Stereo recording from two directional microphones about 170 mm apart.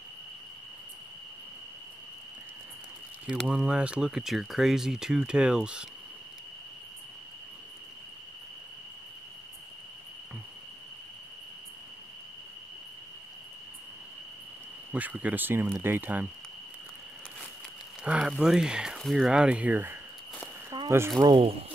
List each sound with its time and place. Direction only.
3.3 s speech: 5° right (ahead or behind)
14.9 s speech: 10° right (ahead or behind)
18.0 s speech: 5° right (ahead or behind)
20.7 s a sound: 25° right (ahead or behind)
21.2 s speech: 30° right (ahead or behind)